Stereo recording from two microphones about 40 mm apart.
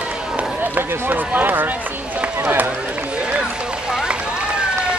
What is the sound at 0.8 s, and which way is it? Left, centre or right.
Run, right.